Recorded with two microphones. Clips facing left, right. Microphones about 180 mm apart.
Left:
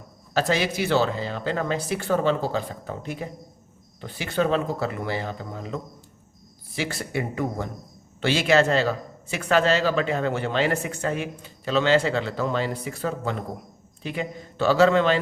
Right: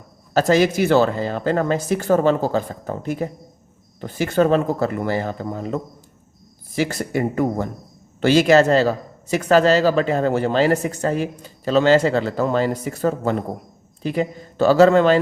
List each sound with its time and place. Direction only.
0.3 s speech: 45° right (ahead or behind)